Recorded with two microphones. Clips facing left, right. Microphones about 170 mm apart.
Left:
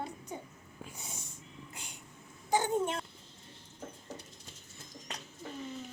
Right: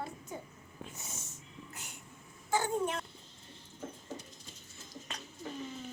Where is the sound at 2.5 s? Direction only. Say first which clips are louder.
Left 2 dB; 20° left (ahead or behind).